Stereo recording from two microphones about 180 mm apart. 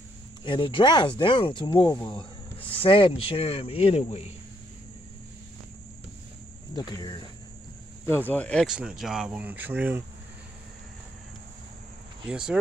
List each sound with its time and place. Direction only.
0.4 s speech: 30° left (ahead or behind)
6.7 s speech: 20° left (ahead or behind)
8.3 s speech: 5° left (ahead or behind)
8.6 s speech: 5° right (ahead or behind)
12.3 s speech: 5° right (ahead or behind)